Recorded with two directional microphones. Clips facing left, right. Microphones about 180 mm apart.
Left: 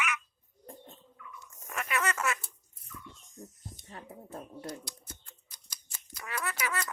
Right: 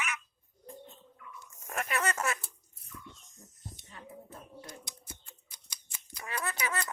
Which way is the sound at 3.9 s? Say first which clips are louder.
Left 5 dB; 45° left (ahead or behind).